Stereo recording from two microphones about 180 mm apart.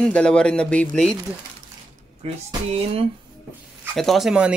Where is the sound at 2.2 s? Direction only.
35° right (ahead or behind).